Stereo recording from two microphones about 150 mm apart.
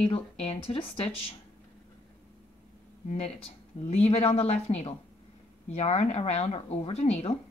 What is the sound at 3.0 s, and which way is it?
Speech, 45° left (ahead or behind).